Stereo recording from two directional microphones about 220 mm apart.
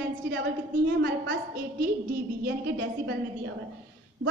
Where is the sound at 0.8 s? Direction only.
50° right (ahead or behind).